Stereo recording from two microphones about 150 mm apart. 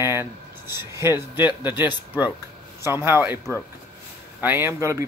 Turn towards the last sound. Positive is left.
turn(degrees=-20)  # may be behind; listen again after turning